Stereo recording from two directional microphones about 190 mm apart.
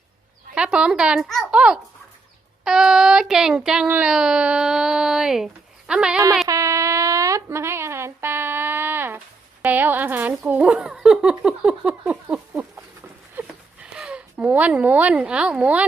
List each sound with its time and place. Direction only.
0.5 s speech: 5° right (ahead or behind)
6.5 s a sound: 15° right (ahead or behind)
13.9 s speech: 5° right (ahead or behind)